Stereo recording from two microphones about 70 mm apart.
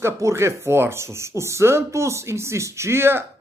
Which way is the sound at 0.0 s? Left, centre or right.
Right.